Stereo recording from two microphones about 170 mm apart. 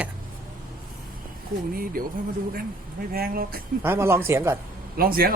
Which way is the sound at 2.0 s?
55° right (ahead or behind).